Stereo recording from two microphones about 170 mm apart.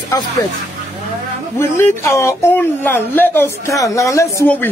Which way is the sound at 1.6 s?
15° left (ahead or behind).